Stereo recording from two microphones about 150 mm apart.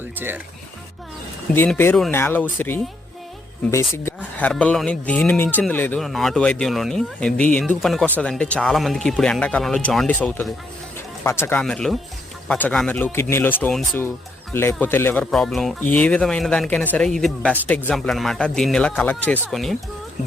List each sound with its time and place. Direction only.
1.5 s speech: 15° left (ahead or behind)
6.0 s a man's voice: centre (ahead or behind)
11.6 s a man's voice: 5° left (ahead or behind)